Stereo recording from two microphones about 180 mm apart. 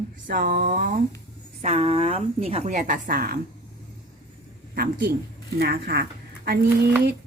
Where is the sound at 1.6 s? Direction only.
35° right (ahead or behind); by 3.4 s 55° right (ahead or behind).